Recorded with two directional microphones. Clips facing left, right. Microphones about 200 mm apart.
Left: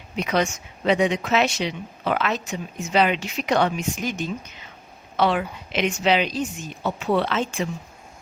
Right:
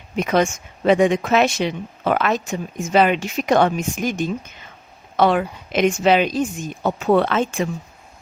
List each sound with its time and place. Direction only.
0.2 s speech: 50° right (ahead or behind)